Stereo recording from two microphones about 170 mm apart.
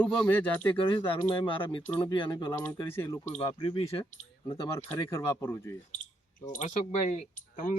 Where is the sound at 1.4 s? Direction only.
30° left (ahead or behind).